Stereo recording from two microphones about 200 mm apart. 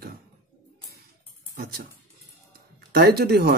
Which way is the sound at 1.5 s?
45° right (ahead or behind).